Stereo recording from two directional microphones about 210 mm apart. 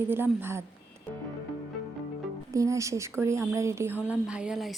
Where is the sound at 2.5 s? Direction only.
15° right (ahead or behind).